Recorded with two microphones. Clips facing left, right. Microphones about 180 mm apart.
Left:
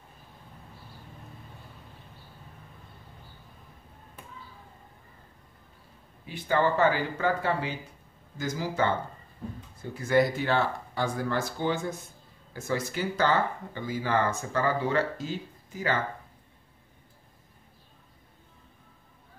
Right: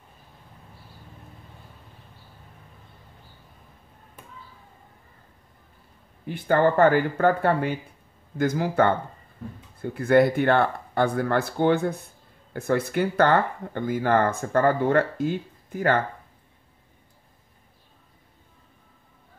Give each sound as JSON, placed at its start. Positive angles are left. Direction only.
{"t": 6.2, "sound": "speech", "side_deg": -55}